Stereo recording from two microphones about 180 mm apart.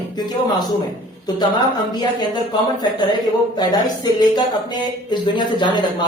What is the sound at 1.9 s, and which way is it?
Speech, 25° left (ahead or behind).